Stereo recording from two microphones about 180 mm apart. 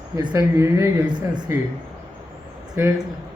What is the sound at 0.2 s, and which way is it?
Speech, 25° right (ahead or behind).